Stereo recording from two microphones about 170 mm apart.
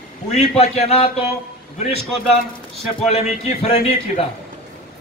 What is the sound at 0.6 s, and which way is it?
Speech, 40° left (ahead or behind).